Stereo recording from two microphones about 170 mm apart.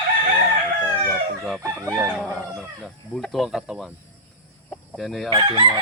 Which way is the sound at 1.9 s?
Centre (ahead or behind).